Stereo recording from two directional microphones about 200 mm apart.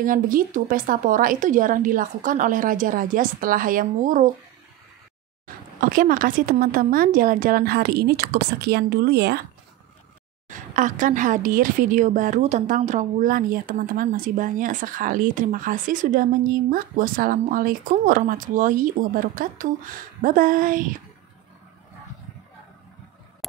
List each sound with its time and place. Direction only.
0.0 s a woman's voice: 45° right (ahead or behind)
5.8 s a woman's voice: 45° right (ahead or behind)
10.5 s a woman's voice: 40° right (ahead or behind)